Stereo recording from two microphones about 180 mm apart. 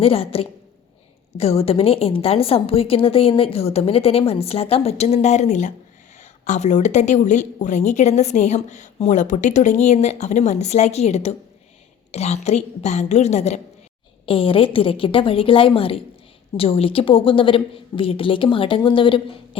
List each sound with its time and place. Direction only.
0.0 s a woman's voice: 30° left (ahead or behind)